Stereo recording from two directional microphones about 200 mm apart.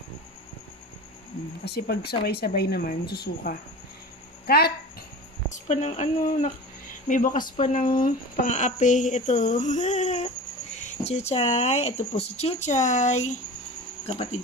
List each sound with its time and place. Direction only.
1.6 s a woman's voice: 55° left (ahead or behind)
5.5 s a woman's voice: 35° left (ahead or behind)